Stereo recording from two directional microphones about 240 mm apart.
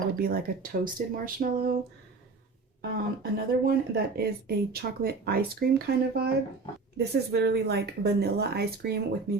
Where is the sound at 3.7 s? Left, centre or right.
Right.